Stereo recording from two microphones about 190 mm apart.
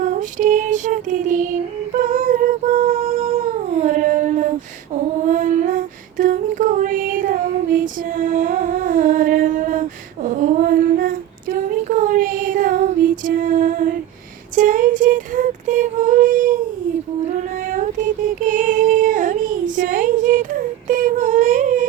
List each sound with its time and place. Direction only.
0.0 s child singing: 45° right (ahead or behind)
2.0 s a sound: 45° right (ahead or behind)
5.3 s female singing: 40° right (ahead or behind)
10.2 s child singing: 40° right (ahead or behind)
13.2 s music: 45° right (ahead or behind)
14.5 s female singing: 45° right (ahead or behind)
18.4 s female singing: 45° right (ahead or behind)